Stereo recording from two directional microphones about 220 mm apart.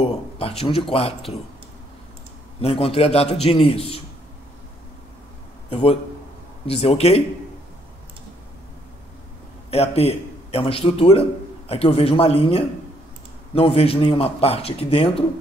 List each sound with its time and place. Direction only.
0.0 s speech: 25° left (ahead or behind)
2.6 s speech: 25° left (ahead or behind)
5.7 s a man's voice: 25° left (ahead or behind)
9.7 s a man's voice: 25° left (ahead or behind)